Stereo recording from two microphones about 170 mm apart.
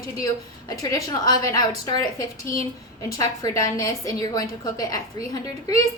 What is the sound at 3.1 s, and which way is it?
A woman's voice, 20° left (ahead or behind).